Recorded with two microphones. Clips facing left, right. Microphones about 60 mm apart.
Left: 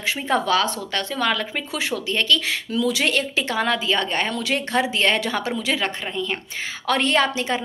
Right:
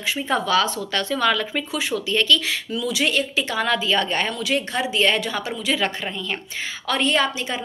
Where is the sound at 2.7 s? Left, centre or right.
Left.